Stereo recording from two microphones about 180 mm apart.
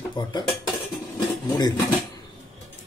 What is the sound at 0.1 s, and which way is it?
Dishes, 25° left (ahead or behind).